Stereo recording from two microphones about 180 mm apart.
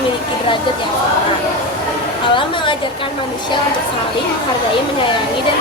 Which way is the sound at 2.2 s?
25° left (ahead or behind).